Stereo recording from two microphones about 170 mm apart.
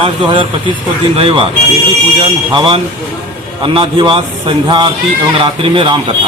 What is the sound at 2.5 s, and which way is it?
A man's voice, 30° right (ahead or behind).